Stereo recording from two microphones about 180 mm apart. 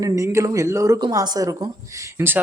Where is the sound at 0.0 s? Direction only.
15° right (ahead or behind).